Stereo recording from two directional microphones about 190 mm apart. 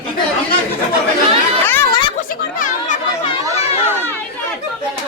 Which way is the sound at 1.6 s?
10° left (ahead or behind).